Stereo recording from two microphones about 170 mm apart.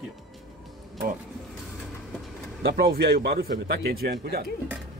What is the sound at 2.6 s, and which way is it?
Speech, 70° right (ahead or behind).